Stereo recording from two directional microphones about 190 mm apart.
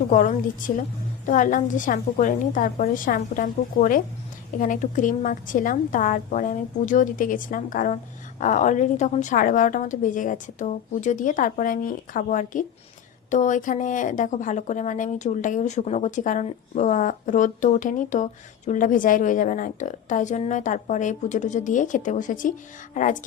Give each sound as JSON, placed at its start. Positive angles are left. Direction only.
{"t": 0.1, "sound": "a woman's voice", "side_deg": 40}